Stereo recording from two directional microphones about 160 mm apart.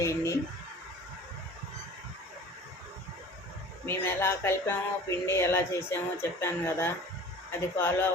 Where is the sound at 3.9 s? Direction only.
15° left (ahead or behind).